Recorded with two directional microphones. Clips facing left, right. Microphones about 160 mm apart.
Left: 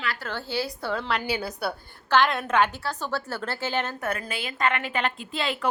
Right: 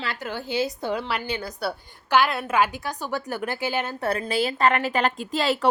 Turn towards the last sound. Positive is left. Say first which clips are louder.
# right 5 dB
turn(degrees=-40)  # may be behind; listen again after turning